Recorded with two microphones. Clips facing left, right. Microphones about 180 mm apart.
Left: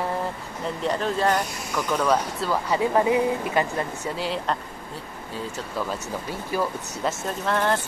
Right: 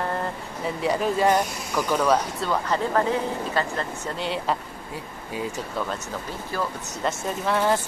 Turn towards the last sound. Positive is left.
turn(degrees=-5)  # may be behind; listen again after turning